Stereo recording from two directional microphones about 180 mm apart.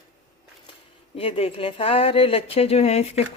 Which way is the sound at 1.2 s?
35° left (ahead or behind).